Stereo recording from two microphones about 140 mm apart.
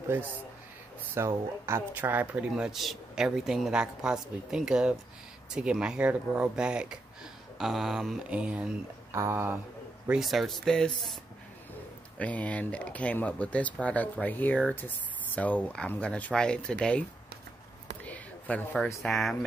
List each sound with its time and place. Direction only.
1.1 s speech: 20° right (ahead or behind)
9.1 s speech: 20° right (ahead or behind)
10.0 s speech: centre (ahead or behind)
12.2 s speech: 10° left (ahead or behind)
18.0 s a sound: 10° left (ahead or behind)
19.0 s speech: centre (ahead or behind)